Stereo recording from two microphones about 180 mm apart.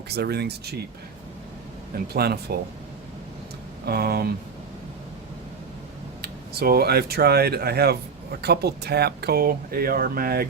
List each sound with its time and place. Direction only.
0.1 s speech: 65° right (ahead or behind)
2.1 s speech: 60° right (ahead or behind)
3.8 s speech: 60° right (ahead or behind)
6.2 s speech: 60° right (ahead or behind)